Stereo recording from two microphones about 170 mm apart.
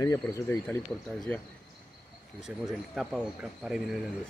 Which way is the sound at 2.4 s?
Centre (ahead or behind).